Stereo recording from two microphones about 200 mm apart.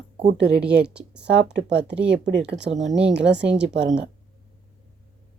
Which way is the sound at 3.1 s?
60° right (ahead or behind).